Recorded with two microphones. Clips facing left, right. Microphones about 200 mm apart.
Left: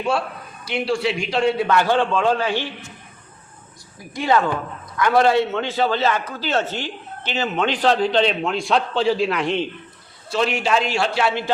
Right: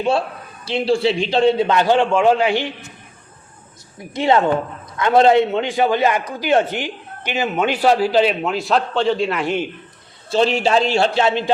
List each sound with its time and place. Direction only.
0.6 s a man's voice: 30° right (ahead or behind)
4.1 s a man's voice: 25° right (ahead or behind); by 9.6 s 5° right (ahead or behind)
10.2 s a man's voice: 30° right (ahead or behind)